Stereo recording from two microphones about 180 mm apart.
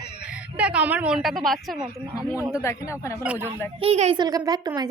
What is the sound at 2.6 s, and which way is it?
Speech, 15° left (ahead or behind).